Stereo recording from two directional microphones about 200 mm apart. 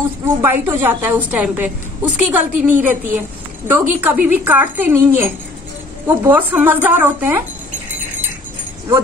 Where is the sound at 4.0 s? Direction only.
10° right (ahead or behind).